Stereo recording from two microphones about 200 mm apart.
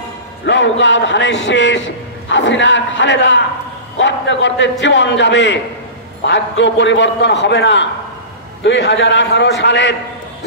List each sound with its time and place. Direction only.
0.5 s a man's voice: 65° left (ahead or behind)